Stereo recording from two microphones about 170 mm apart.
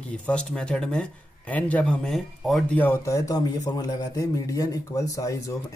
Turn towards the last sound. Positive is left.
turn(degrees=20)  # may be behind; listen again after turning